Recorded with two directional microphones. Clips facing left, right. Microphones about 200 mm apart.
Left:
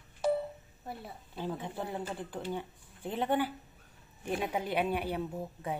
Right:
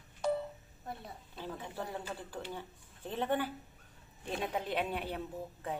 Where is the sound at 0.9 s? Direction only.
15° left (ahead or behind).